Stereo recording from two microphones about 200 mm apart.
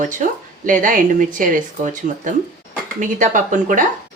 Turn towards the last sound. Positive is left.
turn(degrees=-40)  # may be behind; listen again after turning